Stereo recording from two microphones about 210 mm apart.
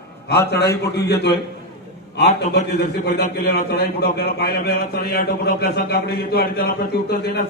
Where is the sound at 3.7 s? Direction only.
50° left (ahead or behind).